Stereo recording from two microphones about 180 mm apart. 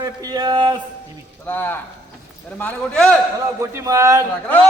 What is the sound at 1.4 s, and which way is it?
A man's voice, 10° left (ahead or behind).